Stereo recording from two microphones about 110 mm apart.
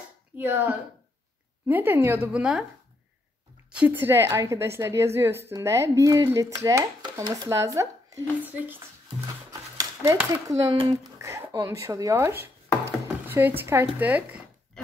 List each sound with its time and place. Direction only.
0.4 s a woman's voice: 20° right (ahead or behind)
3.7 s a woman's voice: 15° right (ahead or behind)
8.5 s speech: 15° right (ahead or behind)
9.5 s a sound: 35° right (ahead or behind)
10.3 s a woman's voice: 30° right (ahead or behind)